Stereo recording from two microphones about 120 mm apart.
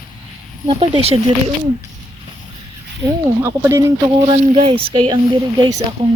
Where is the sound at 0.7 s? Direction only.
50° right (ahead or behind).